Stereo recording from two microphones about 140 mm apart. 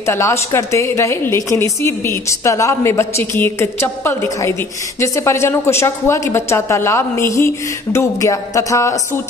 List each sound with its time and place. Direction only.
0.0 s a woman's voice: 20° left (ahead or behind)